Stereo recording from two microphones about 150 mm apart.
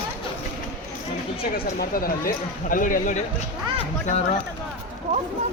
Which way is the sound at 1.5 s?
75° left (ahead or behind).